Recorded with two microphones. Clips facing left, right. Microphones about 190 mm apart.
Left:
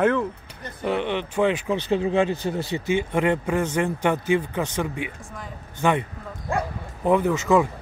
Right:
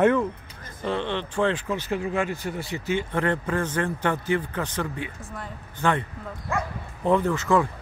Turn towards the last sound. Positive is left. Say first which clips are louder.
# left 2 dB
turn(degrees=10)  # may be behind; listen again after turning